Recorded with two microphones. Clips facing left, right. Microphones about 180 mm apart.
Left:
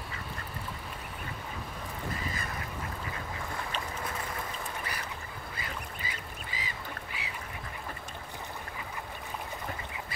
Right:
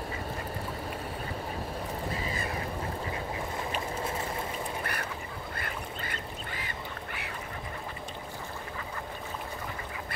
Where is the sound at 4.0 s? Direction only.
25° right (ahead or behind).